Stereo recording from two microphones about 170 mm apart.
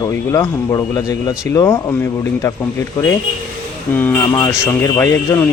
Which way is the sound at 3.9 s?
10° left (ahead or behind).